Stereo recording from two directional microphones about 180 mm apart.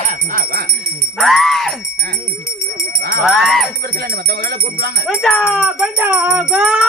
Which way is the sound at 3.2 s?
Centre (ahead or behind).